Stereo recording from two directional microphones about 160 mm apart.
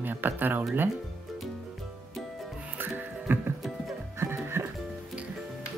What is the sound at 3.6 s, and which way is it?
Music, centre (ahead or behind).